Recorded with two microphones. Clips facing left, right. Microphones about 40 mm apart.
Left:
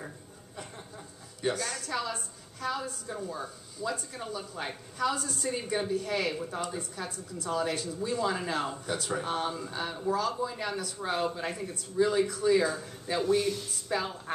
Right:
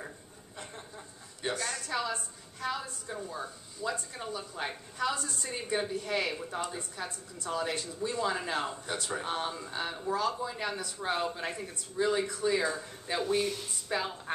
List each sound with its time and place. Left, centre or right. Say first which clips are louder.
0.6 s a woman's voice: left 1 dB; centre